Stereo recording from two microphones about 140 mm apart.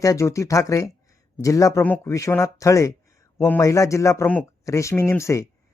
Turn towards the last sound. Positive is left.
turn(degrees=20)  # may be behind; listen again after turning